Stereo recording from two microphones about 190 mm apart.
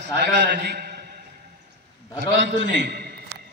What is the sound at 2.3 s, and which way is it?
Speech, 70° right (ahead or behind).